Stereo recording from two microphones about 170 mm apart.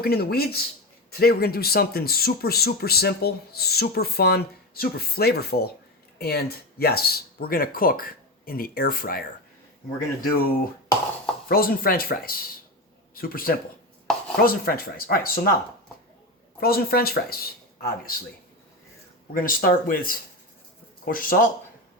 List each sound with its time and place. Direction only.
0.0 s speech: 65° left (ahead or behind)
16.6 s speech: 65° left (ahead or behind)
19.3 s speech: 55° left (ahead or behind)